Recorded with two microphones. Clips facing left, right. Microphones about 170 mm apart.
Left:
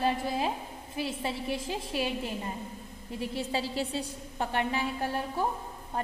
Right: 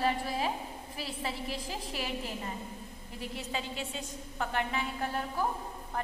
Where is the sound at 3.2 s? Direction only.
30° left (ahead or behind).